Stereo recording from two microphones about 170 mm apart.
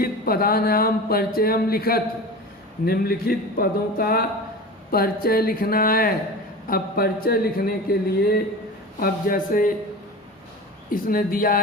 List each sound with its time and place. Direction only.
0.0 s speech: 60° left (ahead or behind)
10.9 s speech: 55° left (ahead or behind)